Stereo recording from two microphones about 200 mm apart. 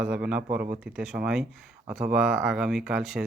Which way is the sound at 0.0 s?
5° right (ahead or behind).